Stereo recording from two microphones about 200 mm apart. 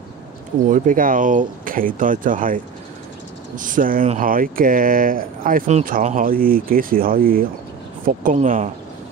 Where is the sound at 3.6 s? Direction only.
40° right (ahead or behind).